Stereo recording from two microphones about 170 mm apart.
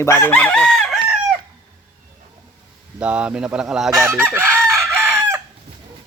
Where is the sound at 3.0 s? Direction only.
5° right (ahead or behind).